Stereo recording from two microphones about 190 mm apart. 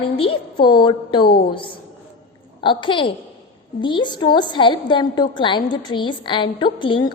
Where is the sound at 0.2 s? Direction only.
25° left (ahead or behind).